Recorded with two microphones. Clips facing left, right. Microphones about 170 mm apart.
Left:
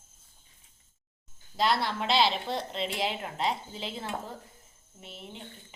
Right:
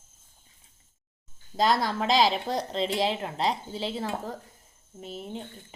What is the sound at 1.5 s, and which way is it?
Speech, 45° right (ahead or behind).